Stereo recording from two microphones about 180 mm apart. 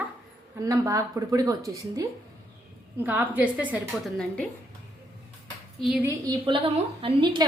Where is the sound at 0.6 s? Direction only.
15° right (ahead or behind).